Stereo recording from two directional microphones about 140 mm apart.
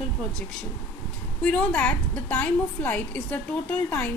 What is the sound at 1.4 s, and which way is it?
A woman's voice, 10° left (ahead or behind).